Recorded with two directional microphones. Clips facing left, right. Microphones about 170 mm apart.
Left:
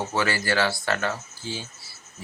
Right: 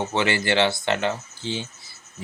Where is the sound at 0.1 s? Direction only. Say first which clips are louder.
Right 2 dB; 25° right (ahead or behind).